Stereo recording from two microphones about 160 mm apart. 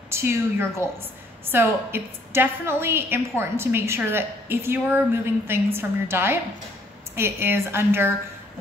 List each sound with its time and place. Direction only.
0.1 s a woman's voice: 15° right (ahead or behind)